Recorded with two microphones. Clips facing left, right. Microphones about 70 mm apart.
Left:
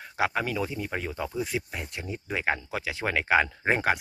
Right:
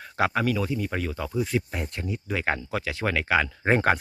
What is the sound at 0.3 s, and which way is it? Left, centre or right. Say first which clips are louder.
Speech: right 4 dB; centre.